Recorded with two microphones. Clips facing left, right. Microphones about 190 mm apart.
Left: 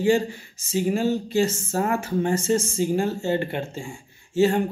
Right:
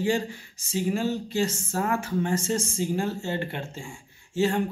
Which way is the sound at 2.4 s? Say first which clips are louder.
Left 5 dB; 5° left (ahead or behind).